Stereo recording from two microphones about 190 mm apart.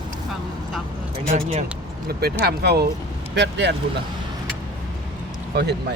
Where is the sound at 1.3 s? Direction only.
30° right (ahead or behind).